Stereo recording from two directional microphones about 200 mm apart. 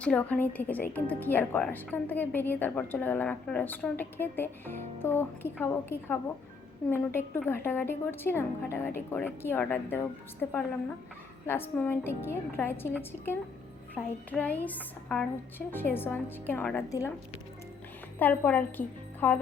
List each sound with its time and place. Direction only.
0.0 s speech: 5° left (ahead or behind)
11.4 s speech: 10° left (ahead or behind)
18.2 s a woman's voice: 10° left (ahead or behind)